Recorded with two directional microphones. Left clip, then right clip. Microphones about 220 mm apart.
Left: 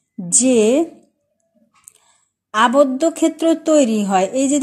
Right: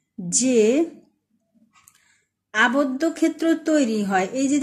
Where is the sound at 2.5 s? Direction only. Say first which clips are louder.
Left 6 dB; 25° left (ahead or behind).